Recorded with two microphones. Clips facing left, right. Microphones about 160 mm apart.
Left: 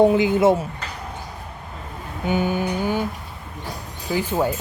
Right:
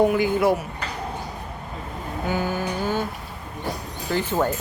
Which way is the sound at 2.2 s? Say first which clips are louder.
Left 4 dB; 20° left (ahead or behind).